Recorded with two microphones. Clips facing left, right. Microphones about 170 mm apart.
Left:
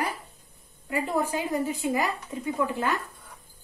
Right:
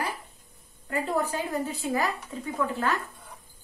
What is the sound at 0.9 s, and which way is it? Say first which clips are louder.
A woman's voice: left 1 dB; 10° left (ahead or behind).